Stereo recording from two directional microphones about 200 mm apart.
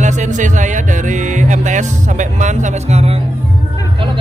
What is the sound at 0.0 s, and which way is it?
Music, 35° right (ahead or behind).